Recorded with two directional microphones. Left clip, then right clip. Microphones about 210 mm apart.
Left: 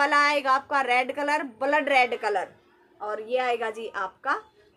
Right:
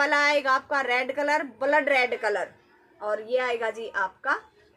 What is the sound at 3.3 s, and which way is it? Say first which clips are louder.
A woman's voice: left 2 dB; 10° left (ahead or behind).